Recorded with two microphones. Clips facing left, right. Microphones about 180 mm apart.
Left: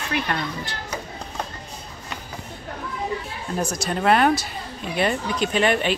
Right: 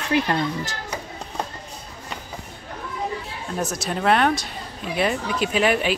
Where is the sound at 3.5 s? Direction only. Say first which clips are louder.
Left 1 dB; centre (ahead or behind).